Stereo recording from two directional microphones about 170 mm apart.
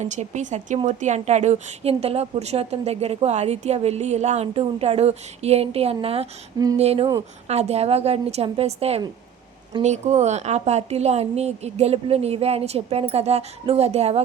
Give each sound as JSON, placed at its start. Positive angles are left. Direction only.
{"t": 0.0, "sound": "a woman's voice", "side_deg": -45}